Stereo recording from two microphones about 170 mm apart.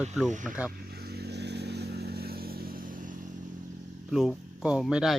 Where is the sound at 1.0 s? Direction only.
70° right (ahead or behind); by 3.1 s 55° right (ahead or behind).